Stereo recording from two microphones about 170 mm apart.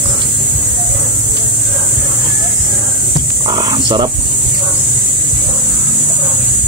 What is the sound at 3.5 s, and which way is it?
Wild animals, 25° right (ahead or behind).